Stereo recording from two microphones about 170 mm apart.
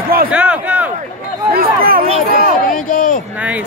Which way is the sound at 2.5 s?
55° left (ahead or behind).